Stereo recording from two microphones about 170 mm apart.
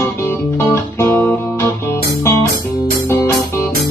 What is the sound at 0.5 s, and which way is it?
Guitar, 15° left (ahead or behind).